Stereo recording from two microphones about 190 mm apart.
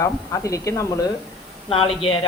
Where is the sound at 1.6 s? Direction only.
30° left (ahead or behind).